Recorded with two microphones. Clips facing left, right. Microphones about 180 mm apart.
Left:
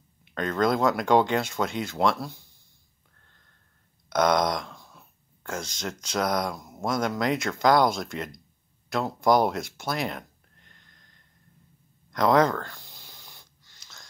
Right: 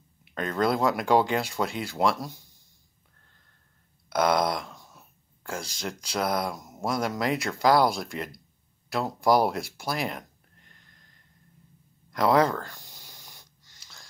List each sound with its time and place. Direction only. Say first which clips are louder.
0.4 s speech: left 1 dB; 5° right (ahead or behind)
4.1 s a sound: left 1 dB; 5° right (ahead or behind)
5.5 s speech: left 1 dB; 5° right (ahead or behind)
12.1 s speech: left 1 dB; 5° right (ahead or behind)
12.6 s snort: left 1 dB; 45° right (ahead or behind)